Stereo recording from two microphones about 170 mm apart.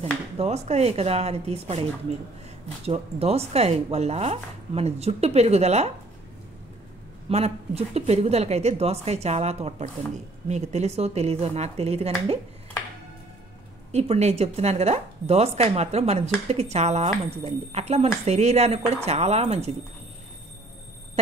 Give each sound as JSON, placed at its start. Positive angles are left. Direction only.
{"t": 0.0, "sound": "speech", "side_deg": -40}
{"t": 7.2, "sound": "speech", "side_deg": -35}
{"t": 13.9, "sound": "speech", "side_deg": -40}